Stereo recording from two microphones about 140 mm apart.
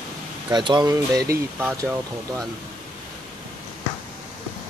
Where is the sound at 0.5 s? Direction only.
30° right (ahead or behind).